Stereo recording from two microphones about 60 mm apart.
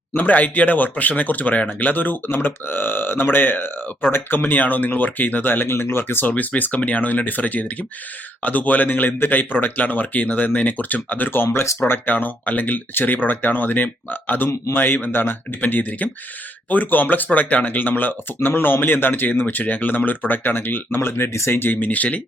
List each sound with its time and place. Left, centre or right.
0.2 s a man's voice: left
11.8 s a man's voice: left
15.7 s a man's voice: left